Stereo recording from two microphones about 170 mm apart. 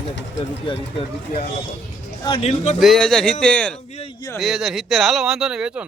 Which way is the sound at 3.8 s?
40° left (ahead or behind).